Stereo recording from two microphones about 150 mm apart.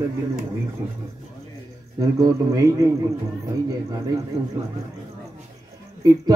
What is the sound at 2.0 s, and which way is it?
Speech, 25° right (ahead or behind).